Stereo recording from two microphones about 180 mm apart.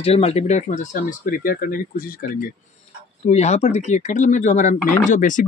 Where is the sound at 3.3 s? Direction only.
40° left (ahead or behind).